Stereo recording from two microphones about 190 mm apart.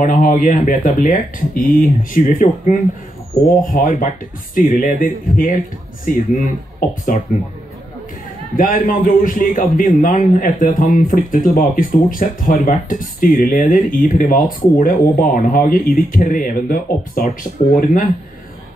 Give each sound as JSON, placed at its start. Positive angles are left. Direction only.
{"t": 0.0, "sound": "a man's voice", "side_deg": 45}
{"t": 8.5, "sound": "a man's voice", "side_deg": 45}